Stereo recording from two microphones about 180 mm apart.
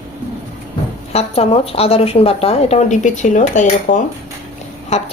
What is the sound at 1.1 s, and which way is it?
Speech, 35° left (ahead or behind).